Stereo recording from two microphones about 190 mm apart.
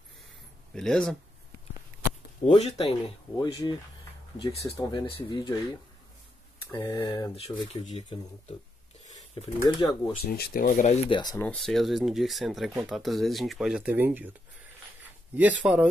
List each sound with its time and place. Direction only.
0.7 s speech: 5° left (ahead or behind)
2.5 s speech: 30° left (ahead or behind)
3.3 s speech: 20° left (ahead or behind)
4.7 s speech: 25° left (ahead or behind)
6.6 s speech: 15° left (ahead or behind)
7.3 s speech: 35° left (ahead or behind)
9.1 s a sound: 35° left (ahead or behind)
9.6 s speech: 25° left (ahead or behind)
10.2 s speech: 55° left (ahead or behind); by 11.0 s 40° left (ahead or behind)
11.1 s speech: 20° left (ahead or behind)
11.4 s speech: centre (ahead or behind)
15.3 s speech: 10° right (ahead or behind)